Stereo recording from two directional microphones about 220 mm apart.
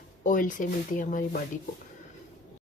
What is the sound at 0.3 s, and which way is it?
Speech, 35° left (ahead or behind).